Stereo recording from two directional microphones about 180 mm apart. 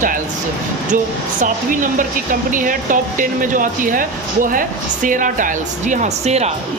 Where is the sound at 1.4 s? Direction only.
50° right (ahead or behind).